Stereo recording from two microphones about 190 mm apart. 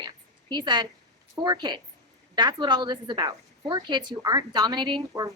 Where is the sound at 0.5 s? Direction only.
25° right (ahead or behind).